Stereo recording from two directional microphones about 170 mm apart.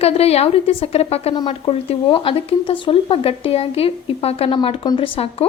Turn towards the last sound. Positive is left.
turn(degrees=35)  # may be behind; listen again after turning